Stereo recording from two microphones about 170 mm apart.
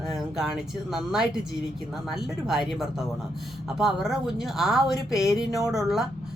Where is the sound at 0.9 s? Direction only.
Centre (ahead or behind).